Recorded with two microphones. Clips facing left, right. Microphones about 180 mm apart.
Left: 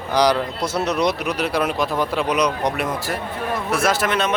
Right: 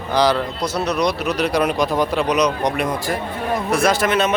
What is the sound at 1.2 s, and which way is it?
Speech, 5° left (ahead or behind).